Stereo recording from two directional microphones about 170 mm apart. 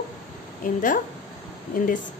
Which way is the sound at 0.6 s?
55° left (ahead or behind).